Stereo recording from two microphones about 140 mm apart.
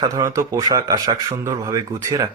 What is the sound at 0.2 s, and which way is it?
Speech, 20° right (ahead or behind).